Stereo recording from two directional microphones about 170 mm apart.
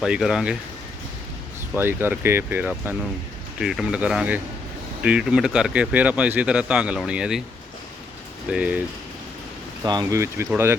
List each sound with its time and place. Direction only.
0.0 s speech: 5° right (ahead or behind)
1.7 s speech: 10° right (ahead or behind)
8.4 s speech: 5° right (ahead or behind)
9.8 s speech: 25° right (ahead or behind)